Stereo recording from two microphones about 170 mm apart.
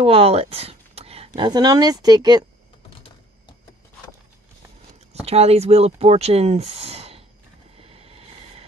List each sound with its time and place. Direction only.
0.0 s speech: 35° right (ahead or behind)
5.2 s speech: 35° right (ahead or behind)
7.8 s vehicle: 35° right (ahead or behind)